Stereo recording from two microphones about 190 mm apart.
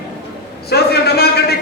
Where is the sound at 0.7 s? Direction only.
55° left (ahead or behind).